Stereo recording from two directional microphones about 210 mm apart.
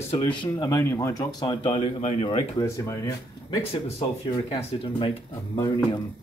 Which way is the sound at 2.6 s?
15° left (ahead or behind).